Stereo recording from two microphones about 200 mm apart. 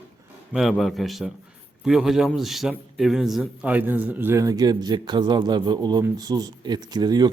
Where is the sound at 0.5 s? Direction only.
Centre (ahead or behind).